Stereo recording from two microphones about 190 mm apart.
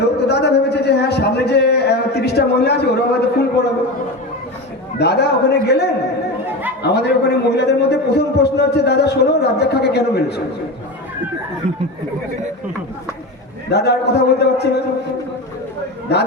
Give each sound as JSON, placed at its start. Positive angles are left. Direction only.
{"t": 0.2, "sound": "a man's voice", "side_deg": 60}
{"t": 4.9, "sound": "a man's voice", "side_deg": 60}
{"t": 13.7, "sound": "a man's voice", "side_deg": 60}
{"t": 16.1, "sound": "a man's voice", "side_deg": 60}